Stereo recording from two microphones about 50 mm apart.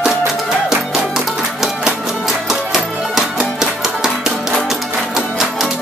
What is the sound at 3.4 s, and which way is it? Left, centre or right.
Music, centre.